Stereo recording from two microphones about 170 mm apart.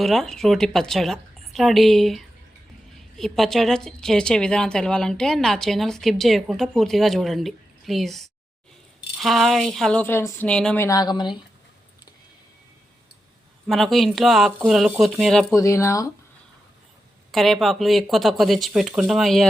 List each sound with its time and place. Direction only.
0.0 s speech: centre (ahead or behind)
10.8 s speech: 20° left (ahead or behind)
13.7 s speech: centre (ahead or behind)
15.5 s speech: 20° left (ahead or behind)
17.3 s speech: centre (ahead or behind)